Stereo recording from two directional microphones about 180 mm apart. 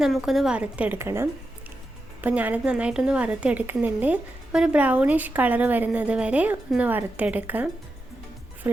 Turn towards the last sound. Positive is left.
turn(degrees=-10)  # may be behind; listen again after turning